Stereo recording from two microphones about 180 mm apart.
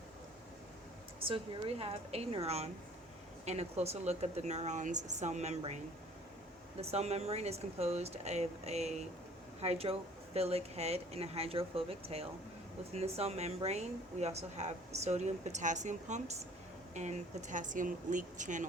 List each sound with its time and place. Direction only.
1.3 s speech: 30° right (ahead or behind)